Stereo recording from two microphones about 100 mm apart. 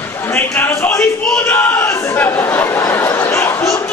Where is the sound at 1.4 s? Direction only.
20° left (ahead or behind).